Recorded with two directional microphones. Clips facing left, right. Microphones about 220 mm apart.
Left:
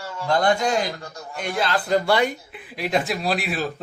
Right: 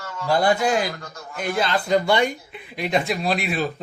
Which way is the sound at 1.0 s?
35° left (ahead or behind).